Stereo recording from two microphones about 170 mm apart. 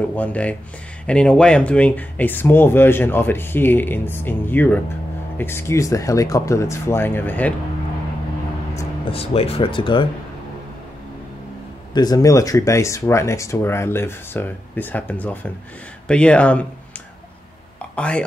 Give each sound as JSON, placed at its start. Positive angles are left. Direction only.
{"t": 0.1, "sound": "speech", "side_deg": 10}
{"t": 9.1, "sound": "speech", "side_deg": 35}
{"t": 11.9, "sound": "speech", "side_deg": 25}
{"t": 17.9, "sound": "speech", "side_deg": 5}